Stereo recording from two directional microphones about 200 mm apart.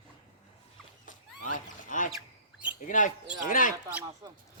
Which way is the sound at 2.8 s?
40° left (ahead or behind).